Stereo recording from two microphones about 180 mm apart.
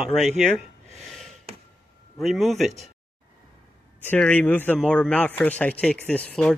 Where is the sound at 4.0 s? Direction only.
10° left (ahead or behind).